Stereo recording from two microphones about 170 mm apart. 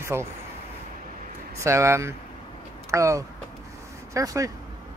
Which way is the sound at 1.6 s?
15° right (ahead or behind).